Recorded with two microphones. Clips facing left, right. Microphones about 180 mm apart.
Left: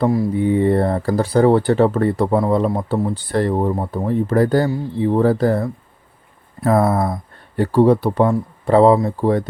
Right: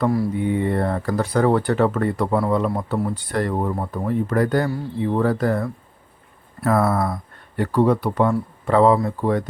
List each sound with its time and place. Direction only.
0.0 s speech: 20° left (ahead or behind)
0.3 s speech: 30° left (ahead or behind)